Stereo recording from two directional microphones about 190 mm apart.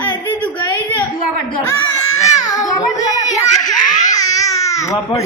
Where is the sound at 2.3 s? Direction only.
15° left (ahead or behind).